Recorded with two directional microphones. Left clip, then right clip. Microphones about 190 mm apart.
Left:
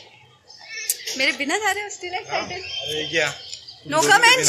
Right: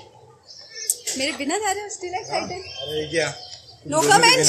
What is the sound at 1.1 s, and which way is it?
Speech, 5° right (ahead or behind).